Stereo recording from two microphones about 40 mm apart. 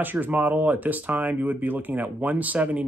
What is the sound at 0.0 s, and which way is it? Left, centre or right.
Speech, right.